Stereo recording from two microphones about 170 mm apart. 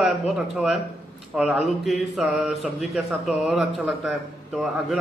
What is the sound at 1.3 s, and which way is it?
A man's voice, 5° right (ahead or behind).